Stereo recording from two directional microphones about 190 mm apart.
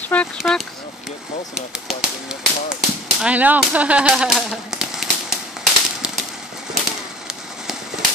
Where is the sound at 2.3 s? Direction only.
5° right (ahead or behind).